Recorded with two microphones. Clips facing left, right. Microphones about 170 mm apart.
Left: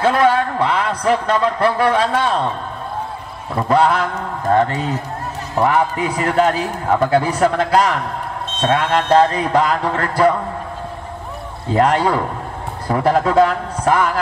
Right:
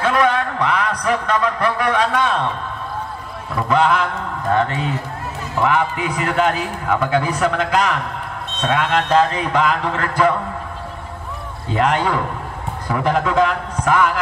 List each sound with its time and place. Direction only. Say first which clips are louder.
0.0 s a man's voice: left 3 dB; 30° left (ahead or behind)
3.6 s a man's voice: left 2 dB; 35° left (ahead or behind)
11.7 s a man's voice: left 3 dB; 35° left (ahead or behind)